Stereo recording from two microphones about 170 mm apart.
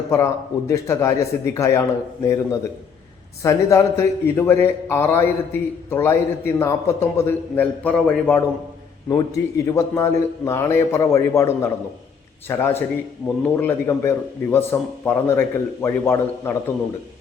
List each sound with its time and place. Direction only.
0.7 s a man's voice: 15° left (ahead or behind)
9.0 s a man's voice: 20° left (ahead or behind)